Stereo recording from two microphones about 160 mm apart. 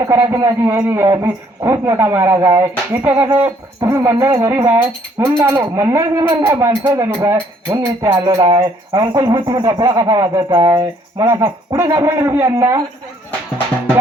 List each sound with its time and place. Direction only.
0.0 s speech: 15° right (ahead or behind)